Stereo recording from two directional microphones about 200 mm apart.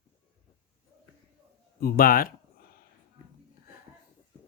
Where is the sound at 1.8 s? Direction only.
50° left (ahead or behind).